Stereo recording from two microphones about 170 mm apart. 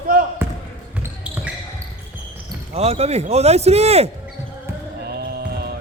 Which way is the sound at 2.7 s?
40° right (ahead or behind).